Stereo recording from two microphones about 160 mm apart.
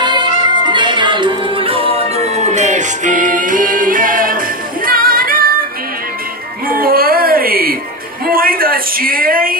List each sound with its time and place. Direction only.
0.0 s music: 30° right (ahead or behind); by 5.6 s 65° right (ahead or behind)
6.7 s music: 65° right (ahead or behind)
8.3 s a sound: 65° right (ahead or behind)